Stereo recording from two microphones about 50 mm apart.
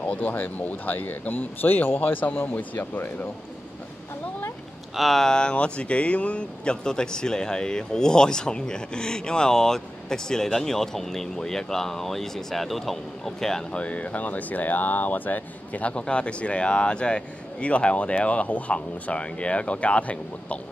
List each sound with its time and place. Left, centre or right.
0.1 s speech: left
4.9 s speech: centre
13.7 s speech: left